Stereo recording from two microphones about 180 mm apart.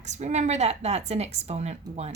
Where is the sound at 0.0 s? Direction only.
40° right (ahead or behind).